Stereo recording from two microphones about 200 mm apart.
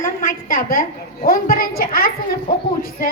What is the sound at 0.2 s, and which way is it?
A woman's voice, 45° left (ahead or behind).